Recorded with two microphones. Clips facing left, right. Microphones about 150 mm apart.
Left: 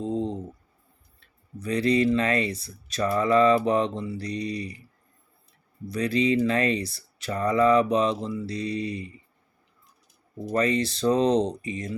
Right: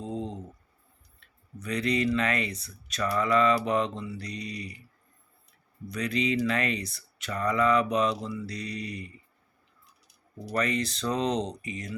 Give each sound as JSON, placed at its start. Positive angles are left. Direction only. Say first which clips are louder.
{"t": 1.5, "sound": "speech", "louder": "left 5 dB", "side_deg": 30}
{"t": 5.9, "sound": "speech", "louder": "left 5 dB", "side_deg": 30}
{"t": 10.5, "sound": "speech", "louder": "left 5 dB", "side_deg": 25}